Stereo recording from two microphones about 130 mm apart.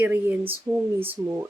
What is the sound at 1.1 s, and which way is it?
Speech, 20° right (ahead or behind).